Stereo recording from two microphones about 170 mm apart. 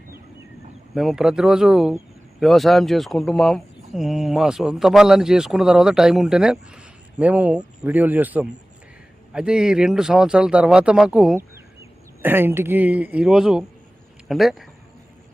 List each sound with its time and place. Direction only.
0.9 s speech: 5° right (ahead or behind)
11.3 s speech: 15° right (ahead or behind)